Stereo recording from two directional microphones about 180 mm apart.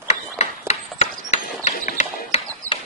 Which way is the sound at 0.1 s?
40° left (ahead or behind).